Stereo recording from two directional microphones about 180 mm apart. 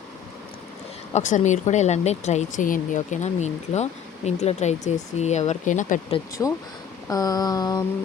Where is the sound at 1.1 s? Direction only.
40° left (ahead or behind).